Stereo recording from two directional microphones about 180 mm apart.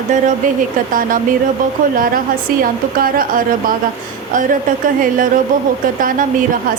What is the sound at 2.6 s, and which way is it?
Speech, 50° right (ahead or behind).